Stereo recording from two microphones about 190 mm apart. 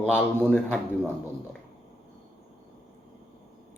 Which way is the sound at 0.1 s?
5° left (ahead or behind).